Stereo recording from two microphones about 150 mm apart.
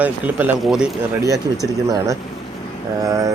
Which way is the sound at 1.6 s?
20° right (ahead or behind).